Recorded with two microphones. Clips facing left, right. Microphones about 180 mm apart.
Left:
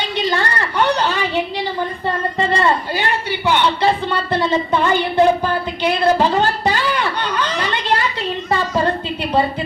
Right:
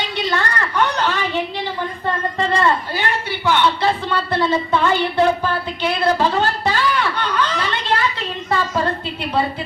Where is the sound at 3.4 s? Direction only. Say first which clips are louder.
Left 1 dB; 15° left (ahead or behind).